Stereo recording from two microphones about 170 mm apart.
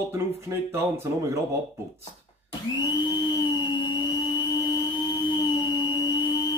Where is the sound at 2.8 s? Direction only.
25° left (ahead or behind).